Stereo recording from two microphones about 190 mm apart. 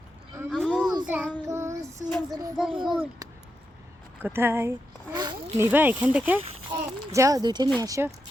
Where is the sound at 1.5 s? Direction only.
15° right (ahead or behind).